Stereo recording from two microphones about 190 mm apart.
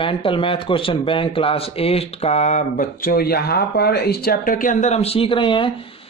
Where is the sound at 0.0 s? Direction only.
30° left (ahead or behind).